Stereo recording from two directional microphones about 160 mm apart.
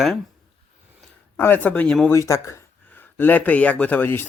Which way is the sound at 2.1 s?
20° left (ahead or behind).